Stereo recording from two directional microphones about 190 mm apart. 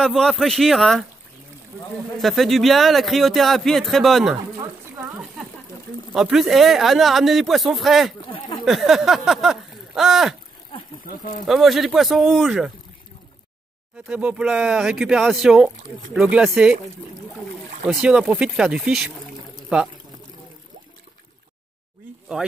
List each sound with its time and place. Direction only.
0.0 s a man's voice: centre (ahead or behind)
2.1 s a man's voice: centre (ahead or behind)
4.9 s a sound: 5° right (ahead or behind)
6.1 s a man's voice: centre (ahead or behind)
8.3 s a sound: 25° left (ahead or behind)
8.6 s speech: centre (ahead or behind)
11.1 s speech: 45° left (ahead or behind)
11.4 s a man's voice: centre (ahead or behind)
14.0 s a man's voice: 5° right (ahead or behind)
17.8 s a man's voice: 5° right (ahead or behind)